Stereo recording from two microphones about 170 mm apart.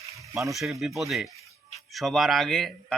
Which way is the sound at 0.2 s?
20° right (ahead or behind).